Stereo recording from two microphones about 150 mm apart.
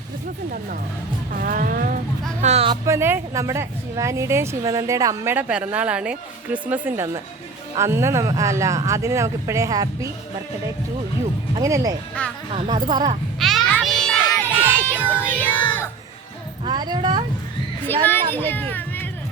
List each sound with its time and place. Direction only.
1.4 s speech: 65° right (ahead or behind)
2.4 s speech: 45° right (ahead or behind)
2.8 s speech: 20° right (ahead or behind)
11.6 s speech: 20° right (ahead or behind)
12.2 s speech: 10° left (ahead or behind)
12.6 s speech: 30° right (ahead or behind)
13.4 s music: centre (ahead or behind)
14.4 s crowd: 15° right (ahead or behind)
15.1 s music: 10° left (ahead or behind)
16.6 s speech: 30° right (ahead or behind)
17.8 s speech: 15° left (ahead or behind)